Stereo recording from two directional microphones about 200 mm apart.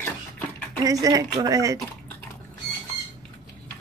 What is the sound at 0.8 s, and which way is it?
Speech, 15° right (ahead or behind).